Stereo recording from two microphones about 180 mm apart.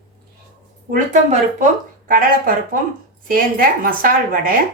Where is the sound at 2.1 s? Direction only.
50° right (ahead or behind).